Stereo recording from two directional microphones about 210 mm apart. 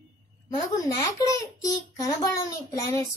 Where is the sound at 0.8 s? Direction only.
15° left (ahead or behind).